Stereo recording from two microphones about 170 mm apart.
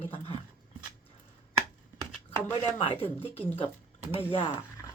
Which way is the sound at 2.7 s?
35° left (ahead or behind).